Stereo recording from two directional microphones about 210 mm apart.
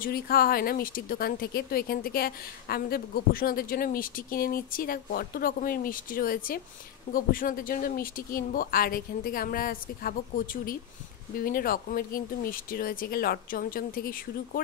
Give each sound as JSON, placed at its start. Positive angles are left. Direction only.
{"t": 0.0, "sound": "speech", "side_deg": 45}